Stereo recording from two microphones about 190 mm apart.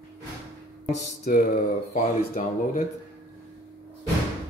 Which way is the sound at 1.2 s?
45° left (ahead or behind).